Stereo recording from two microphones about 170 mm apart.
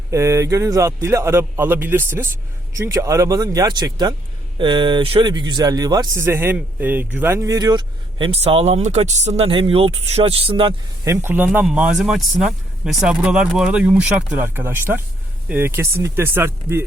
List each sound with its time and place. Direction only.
0.1 s speech: 15° right (ahead or behind)
11.1 s speech: 15° right (ahead or behind)